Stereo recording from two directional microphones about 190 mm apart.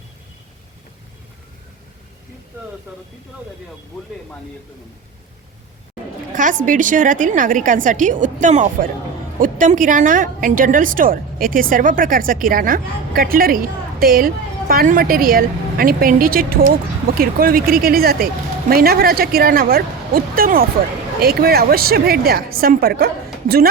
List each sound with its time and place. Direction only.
6.3 s a woman's voice: 45° right (ahead or behind)